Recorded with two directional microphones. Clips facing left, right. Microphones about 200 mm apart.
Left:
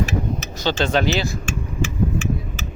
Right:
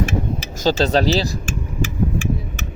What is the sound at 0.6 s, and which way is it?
Speech, 35° right (ahead or behind).